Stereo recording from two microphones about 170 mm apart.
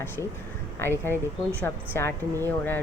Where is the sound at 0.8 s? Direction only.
15° left (ahead or behind).